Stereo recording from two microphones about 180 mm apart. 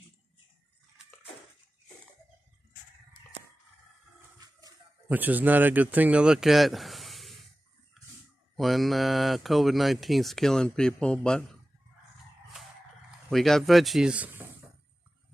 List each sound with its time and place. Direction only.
4.4 s a sound: 20° right (ahead or behind)
5.0 s speech: 10° right (ahead or behind)
8.5 s speech: centre (ahead or behind)
13.3 s speech: centre (ahead or behind)